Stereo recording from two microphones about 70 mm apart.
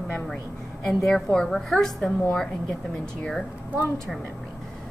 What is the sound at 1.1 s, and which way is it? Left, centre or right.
A woman's voice, centre.